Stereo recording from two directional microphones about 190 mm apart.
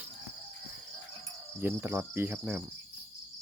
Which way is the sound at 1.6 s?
10° right (ahead or behind).